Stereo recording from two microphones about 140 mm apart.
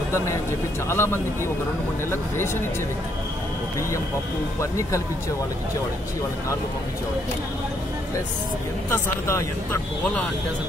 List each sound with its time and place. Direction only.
0.8 s speech: 20° left (ahead or behind)
4.6 s speech: 20° left (ahead or behind)
8.9 s speech: 15° left (ahead or behind)